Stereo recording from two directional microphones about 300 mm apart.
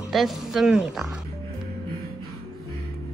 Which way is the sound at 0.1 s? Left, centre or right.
Centre.